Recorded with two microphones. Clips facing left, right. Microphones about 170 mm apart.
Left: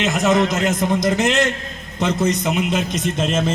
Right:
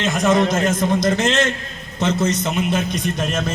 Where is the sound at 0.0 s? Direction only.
20° left (ahead or behind).